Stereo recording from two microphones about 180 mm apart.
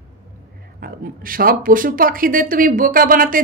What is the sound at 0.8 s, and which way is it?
Speech, 55° right (ahead or behind).